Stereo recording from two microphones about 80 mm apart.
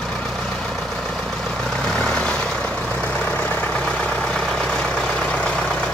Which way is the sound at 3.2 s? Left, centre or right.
Left.